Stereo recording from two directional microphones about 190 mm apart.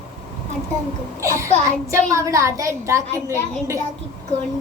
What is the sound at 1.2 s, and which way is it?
A woman's voice, 15° right (ahead or behind).